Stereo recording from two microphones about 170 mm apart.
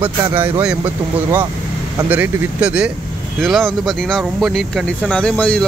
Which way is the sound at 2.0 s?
10° right (ahead or behind).